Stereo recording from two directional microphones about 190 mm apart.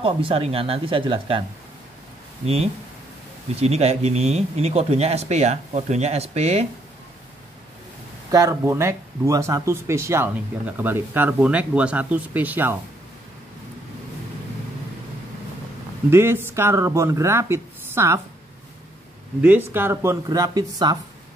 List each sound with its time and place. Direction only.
0.0 s speech: 30° right (ahead or behind)
2.4 s speech: 30° right (ahead or behind)
8.3 s speech: 15° right (ahead or behind)
16.1 s speech: 15° right (ahead or behind)
19.4 s speech: 10° right (ahead or behind)